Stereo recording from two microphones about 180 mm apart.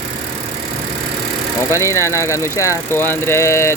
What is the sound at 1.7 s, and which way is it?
Speech, 15° left (ahead or behind).